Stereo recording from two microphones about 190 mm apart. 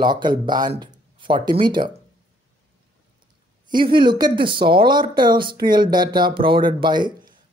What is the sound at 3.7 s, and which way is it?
Speech, 25° right (ahead or behind).